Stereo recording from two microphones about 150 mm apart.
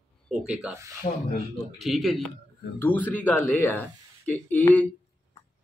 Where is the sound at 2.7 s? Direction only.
10° left (ahead or behind).